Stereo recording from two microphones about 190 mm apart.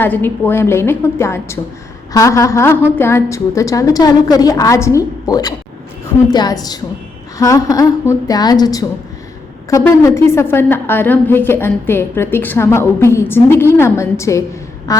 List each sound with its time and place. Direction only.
0.0 s a woman's voice: 10° left (ahead or behind)